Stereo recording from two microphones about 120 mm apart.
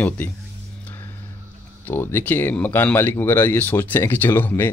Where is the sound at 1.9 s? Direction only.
15° left (ahead or behind).